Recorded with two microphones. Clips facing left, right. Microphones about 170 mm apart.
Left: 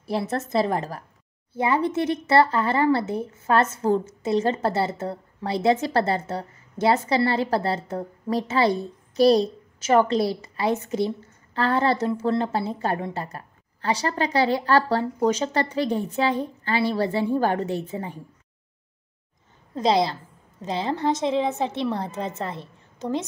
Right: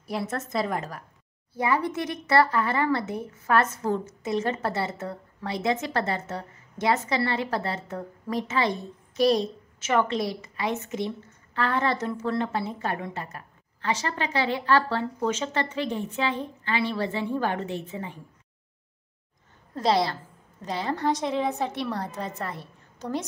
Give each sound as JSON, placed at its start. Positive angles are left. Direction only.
{"t": 0.0, "sound": "speech", "side_deg": 30}
{"t": 19.7, "sound": "a woman's voice", "side_deg": 20}